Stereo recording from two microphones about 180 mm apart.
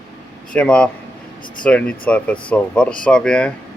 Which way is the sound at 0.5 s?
5° left (ahead or behind).